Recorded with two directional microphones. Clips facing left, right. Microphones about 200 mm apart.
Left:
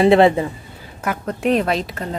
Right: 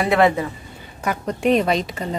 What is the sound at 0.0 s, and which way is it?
Speech, 25° left (ahead or behind).